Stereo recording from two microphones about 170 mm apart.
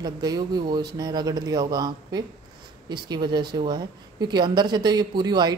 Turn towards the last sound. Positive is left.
turn(degrees=-25)  # may be behind; listen again after turning